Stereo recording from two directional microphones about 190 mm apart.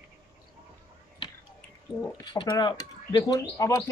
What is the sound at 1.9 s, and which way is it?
Speech, 20° left (ahead or behind).